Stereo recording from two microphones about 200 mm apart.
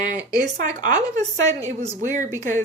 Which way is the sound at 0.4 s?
40° right (ahead or behind).